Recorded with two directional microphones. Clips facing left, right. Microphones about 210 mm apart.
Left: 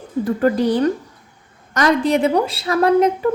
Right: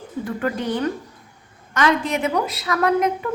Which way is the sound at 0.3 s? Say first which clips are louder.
Left 7 dB; 35° left (ahead or behind).